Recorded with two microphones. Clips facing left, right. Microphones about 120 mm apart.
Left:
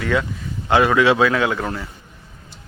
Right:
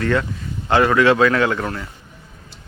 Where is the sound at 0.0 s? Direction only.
5° left (ahead or behind).